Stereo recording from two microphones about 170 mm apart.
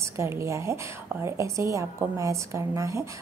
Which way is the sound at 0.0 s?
15° right (ahead or behind).